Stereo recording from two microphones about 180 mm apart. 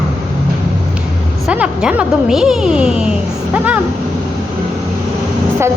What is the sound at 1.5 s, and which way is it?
Speech, 5° right (ahead or behind).